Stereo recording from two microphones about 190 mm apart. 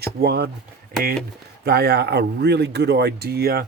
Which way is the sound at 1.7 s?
60° right (ahead or behind).